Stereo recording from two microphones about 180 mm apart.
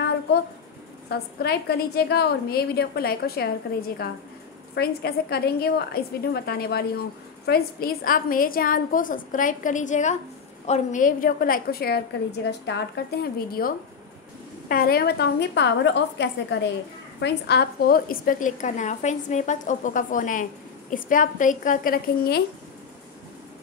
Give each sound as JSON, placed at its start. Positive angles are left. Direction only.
{"t": 1.4, "sound": "a woman's voice", "side_deg": 65}